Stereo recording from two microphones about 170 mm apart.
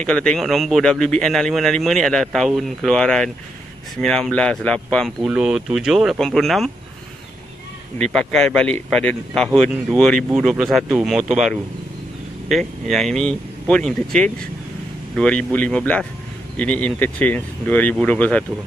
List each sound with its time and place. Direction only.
0.0 s speech: 5° left (ahead or behind)
5.2 s speech: 5° right (ahead or behind)
8.0 s speech: 5° left (ahead or behind)